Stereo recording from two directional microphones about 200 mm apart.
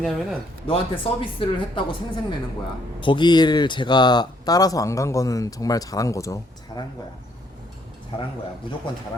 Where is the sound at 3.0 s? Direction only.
20° left (ahead or behind).